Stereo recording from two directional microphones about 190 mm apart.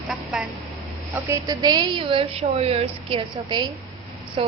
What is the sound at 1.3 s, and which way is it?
A woman's voice, 20° right (ahead or behind).